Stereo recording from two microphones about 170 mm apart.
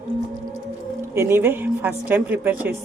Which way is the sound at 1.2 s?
15° right (ahead or behind).